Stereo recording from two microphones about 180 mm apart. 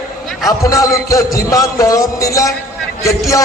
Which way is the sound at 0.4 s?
20° left (ahead or behind).